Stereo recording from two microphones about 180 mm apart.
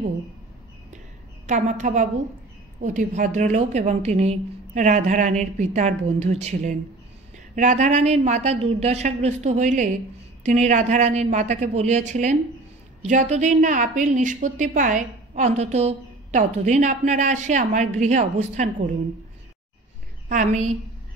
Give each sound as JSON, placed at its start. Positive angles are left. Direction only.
{"t": 1.5, "sound": "a woman's voice", "side_deg": -45}
{"t": 20.2, "sound": "a woman's voice", "side_deg": -45}